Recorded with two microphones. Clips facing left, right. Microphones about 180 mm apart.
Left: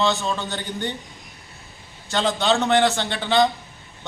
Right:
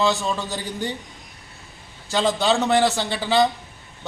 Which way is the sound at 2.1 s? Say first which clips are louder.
Right 1 dB; 5° right (ahead or behind).